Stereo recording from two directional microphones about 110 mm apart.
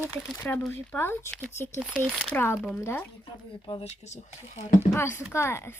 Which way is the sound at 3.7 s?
65° left (ahead or behind).